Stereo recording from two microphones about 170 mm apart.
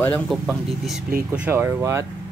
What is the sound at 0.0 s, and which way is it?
Speech, 5° left (ahead or behind).